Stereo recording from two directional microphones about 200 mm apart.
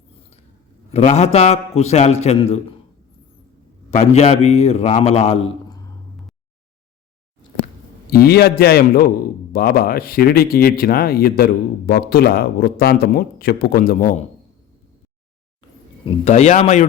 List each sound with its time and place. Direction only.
0.9 s a man's voice: 35° left (ahead or behind)
3.9 s a man's voice: 35° left (ahead or behind)
8.1 s speech: 50° left (ahead or behind)
16.0 s a man's voice: 35° left (ahead or behind)